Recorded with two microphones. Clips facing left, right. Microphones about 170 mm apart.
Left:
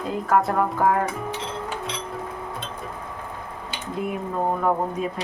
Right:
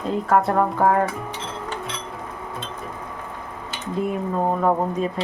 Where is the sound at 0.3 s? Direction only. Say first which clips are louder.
Right 2 dB; centre (ahead or behind).